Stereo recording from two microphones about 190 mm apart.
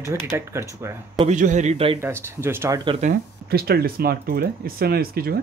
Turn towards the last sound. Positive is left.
turn(degrees=-55)  # may be behind; listen again after turning